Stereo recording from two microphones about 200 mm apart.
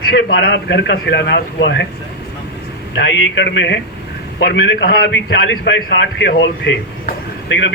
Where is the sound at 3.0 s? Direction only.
65° left (ahead or behind).